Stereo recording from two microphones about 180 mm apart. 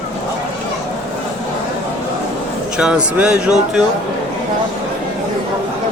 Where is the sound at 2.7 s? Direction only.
5° right (ahead or behind).